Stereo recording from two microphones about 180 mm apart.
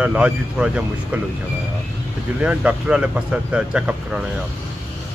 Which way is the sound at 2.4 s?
5° right (ahead or behind).